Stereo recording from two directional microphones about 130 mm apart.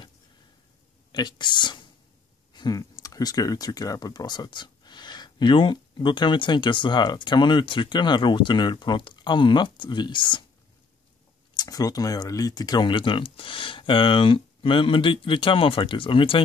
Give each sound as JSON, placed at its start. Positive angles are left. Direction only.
{"t": 1.1, "sound": "speech", "side_deg": 35}
{"t": 11.5, "sound": "speech", "side_deg": 30}